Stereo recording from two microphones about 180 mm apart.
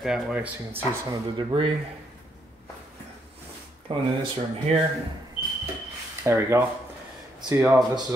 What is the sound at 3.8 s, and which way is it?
Speech, 30° right (ahead or behind).